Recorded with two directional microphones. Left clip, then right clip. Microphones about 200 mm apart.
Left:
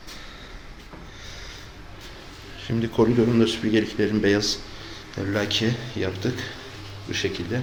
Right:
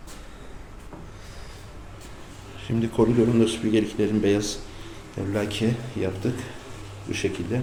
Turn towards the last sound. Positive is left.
turn(degrees=-15)  # may be behind; listen again after turning